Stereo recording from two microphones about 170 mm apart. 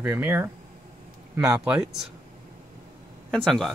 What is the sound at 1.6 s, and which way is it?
Speech, 5° right (ahead or behind).